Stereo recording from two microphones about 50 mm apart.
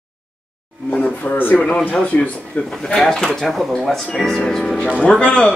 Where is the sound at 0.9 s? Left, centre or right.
Left.